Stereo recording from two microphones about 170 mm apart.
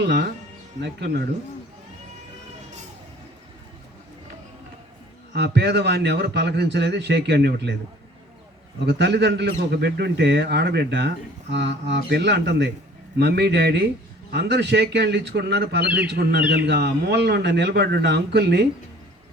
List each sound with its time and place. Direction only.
0.0 s a man's voice: 80° right
5.3 s a man's voice: 85° right
8.9 s a man's voice: 85° right
13.1 s a man's voice: 75° right (ahead or behind)
14.3 s a man's voice: 85° right